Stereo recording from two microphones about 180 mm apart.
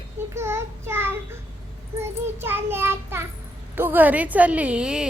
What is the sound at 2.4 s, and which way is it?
A child's voice, 10° right (ahead or behind).